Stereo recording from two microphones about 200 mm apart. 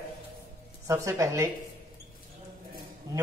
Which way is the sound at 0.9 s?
15° right (ahead or behind).